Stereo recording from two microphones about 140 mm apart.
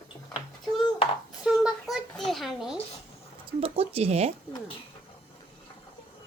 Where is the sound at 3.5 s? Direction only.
40° right (ahead or behind).